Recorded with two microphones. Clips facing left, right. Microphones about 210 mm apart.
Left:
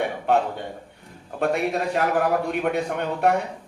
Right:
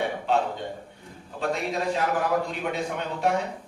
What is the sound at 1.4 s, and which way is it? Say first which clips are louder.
Speech: left 5 dB; 60° left (ahead or behind).